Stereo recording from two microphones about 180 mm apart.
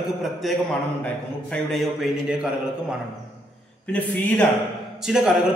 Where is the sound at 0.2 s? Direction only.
Centre (ahead or behind).